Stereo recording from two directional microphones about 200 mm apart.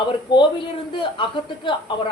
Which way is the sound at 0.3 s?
20° left (ahead or behind).